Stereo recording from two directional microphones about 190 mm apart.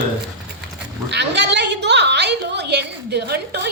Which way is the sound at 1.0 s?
65° right (ahead or behind).